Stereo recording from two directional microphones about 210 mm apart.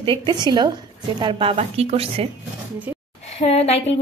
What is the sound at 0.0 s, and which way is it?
A woman's voice, 20° right (ahead or behind).